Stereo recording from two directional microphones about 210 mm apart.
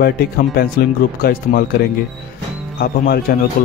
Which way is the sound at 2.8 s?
45° left (ahead or behind).